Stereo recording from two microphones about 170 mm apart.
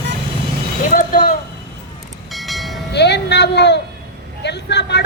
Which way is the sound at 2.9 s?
85° left.